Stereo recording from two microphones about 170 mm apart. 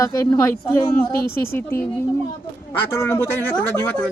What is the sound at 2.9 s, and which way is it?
Speech, 15° left (ahead or behind).